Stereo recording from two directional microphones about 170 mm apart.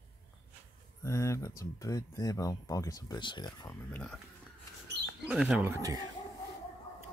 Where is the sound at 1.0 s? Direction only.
15° left (ahead or behind).